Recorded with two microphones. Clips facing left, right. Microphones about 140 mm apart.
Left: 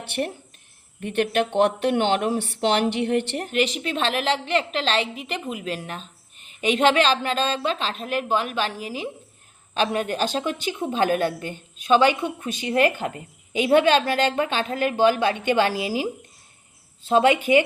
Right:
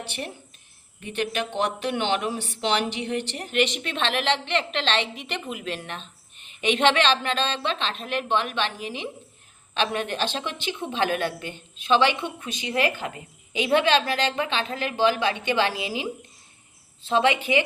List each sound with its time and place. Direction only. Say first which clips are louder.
0.0 s a woman's voice: left 6 dB; 55° left (ahead or behind)
3.5 s a woman's voice: even; 35° left (ahead or behind)